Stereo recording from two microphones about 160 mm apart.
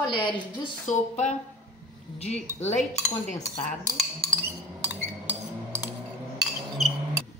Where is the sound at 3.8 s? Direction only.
15° right (ahead or behind).